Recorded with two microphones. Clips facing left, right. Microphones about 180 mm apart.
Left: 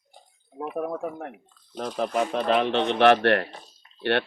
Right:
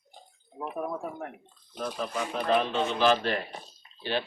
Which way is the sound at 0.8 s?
60° left (ahead or behind).